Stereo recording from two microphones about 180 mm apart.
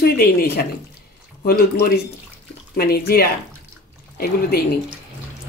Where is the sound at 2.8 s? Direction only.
60° left (ahead or behind).